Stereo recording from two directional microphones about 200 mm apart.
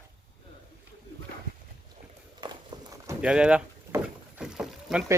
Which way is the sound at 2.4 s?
20° right (ahead or behind).